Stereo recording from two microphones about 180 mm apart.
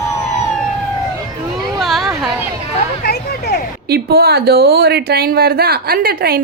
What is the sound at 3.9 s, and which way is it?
Speech, 60° right (ahead or behind).